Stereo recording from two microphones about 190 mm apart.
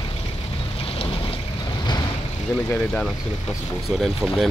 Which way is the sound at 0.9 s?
30° left (ahead or behind).